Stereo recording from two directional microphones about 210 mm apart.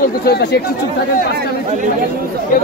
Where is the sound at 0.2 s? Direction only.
50° left (ahead or behind).